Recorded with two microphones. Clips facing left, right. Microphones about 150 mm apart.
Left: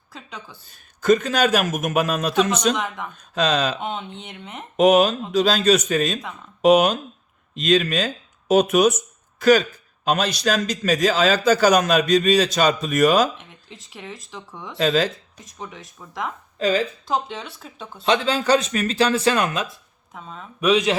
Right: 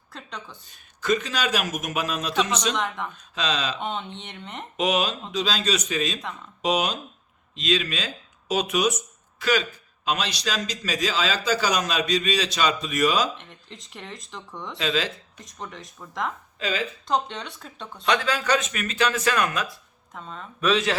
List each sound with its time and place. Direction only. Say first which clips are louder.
0.1 s speech: even; 5° left (ahead or behind)
0.7 s a man's voice: left 7 dB; 45° left (ahead or behind)
2.7 s speech: left 1 dB; 5° left (ahead or behind)
3.2 s a man's voice: left 9 dB; 50° left (ahead or behind)
3.8 s speech: left 2 dB; centre (ahead or behind)
4.8 s a man's voice: left 9 dB; 50° left (ahead or behind)
13.3 s speech: even; 5° left (ahead or behind)
14.8 s a man's voice: left 7 dB; 45° left (ahead or behind)
15.4 s speech: left 1 dB; 5° left (ahead or behind)
16.6 s speech: left 9 dB; 40° left (ahead or behind)
17.1 s speech: left 1 dB; 5° left (ahead or behind)
18.0 s speech: left 4 dB; 25° left (ahead or behind)
20.1 s speech: left 1 dB; 5° left (ahead or behind)
20.6 s speech: left 4 dB; 15° left (ahead or behind)